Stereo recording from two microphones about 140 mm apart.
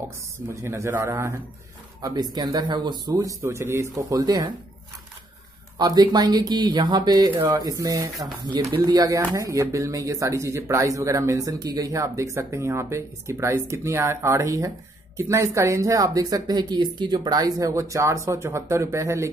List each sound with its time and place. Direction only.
0.5 s speech: 20° right (ahead or behind)
5.8 s speech: 30° right (ahead or behind)